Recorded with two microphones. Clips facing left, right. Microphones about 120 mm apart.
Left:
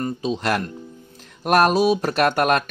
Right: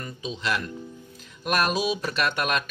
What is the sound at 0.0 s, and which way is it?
Speech, 40° left (ahead or behind).